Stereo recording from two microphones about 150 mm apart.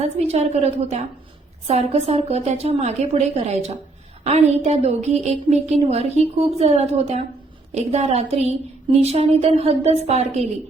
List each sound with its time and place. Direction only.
0.2 s a woman's voice: 45° right (ahead or behind)